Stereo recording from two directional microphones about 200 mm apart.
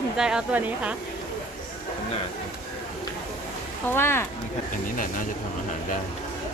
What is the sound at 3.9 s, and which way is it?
Speech, 10° left (ahead or behind).